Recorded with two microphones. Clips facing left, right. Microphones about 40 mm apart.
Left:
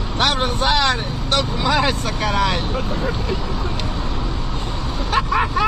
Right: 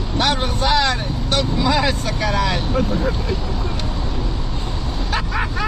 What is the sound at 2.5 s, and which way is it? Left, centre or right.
Speech, centre.